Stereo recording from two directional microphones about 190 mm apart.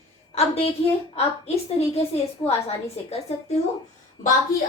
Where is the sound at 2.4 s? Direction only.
10° left (ahead or behind).